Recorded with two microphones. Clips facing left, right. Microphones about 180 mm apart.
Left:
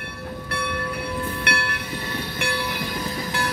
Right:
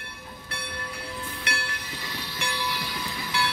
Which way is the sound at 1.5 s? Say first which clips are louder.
Left 4 dB; 60° left (ahead or behind).